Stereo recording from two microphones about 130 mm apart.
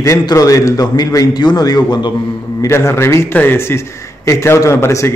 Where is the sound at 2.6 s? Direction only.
20° left (ahead or behind).